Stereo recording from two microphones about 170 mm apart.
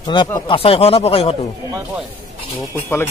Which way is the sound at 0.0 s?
25° left (ahead or behind).